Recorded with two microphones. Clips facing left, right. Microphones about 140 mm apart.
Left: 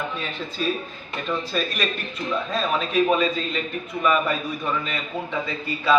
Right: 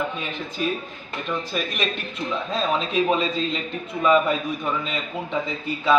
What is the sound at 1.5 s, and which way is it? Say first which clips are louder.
A man's voice: left 1 dB; 20° right (ahead or behind).